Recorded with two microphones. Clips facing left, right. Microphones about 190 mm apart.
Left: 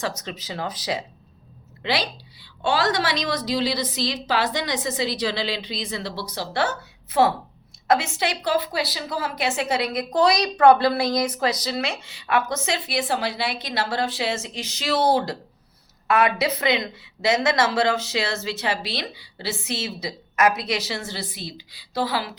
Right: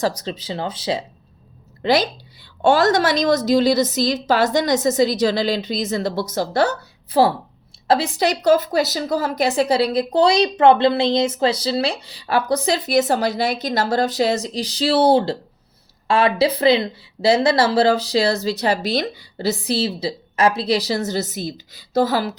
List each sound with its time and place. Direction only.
0.0 s speech: 35° right (ahead or behind)
1.8 s a woman's voice: 45° right (ahead or behind)